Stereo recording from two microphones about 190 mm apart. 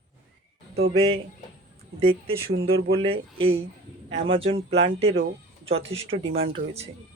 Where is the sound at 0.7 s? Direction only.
75° right (ahead or behind).